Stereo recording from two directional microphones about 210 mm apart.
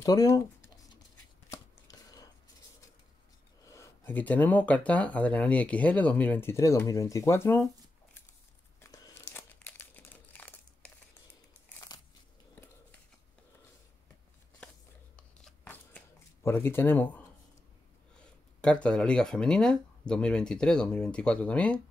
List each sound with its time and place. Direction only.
0.0 s speech: 15° left (ahead or behind)
1.5 s chopping: 15° left (ahead or behind)
3.6 s speech: 15° left (ahead or behind)
8.8 s crumpling: 15° left (ahead or behind)
11.9 s biting: 20° left (ahead or behind)
15.1 s scissors: 5° left (ahead or behind)
16.4 s speech: 10° left (ahead or behind)